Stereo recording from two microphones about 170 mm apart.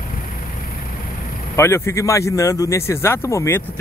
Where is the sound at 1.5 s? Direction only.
15° left (ahead or behind).